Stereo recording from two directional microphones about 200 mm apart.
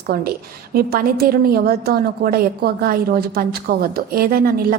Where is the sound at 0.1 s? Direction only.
50° right (ahead or behind).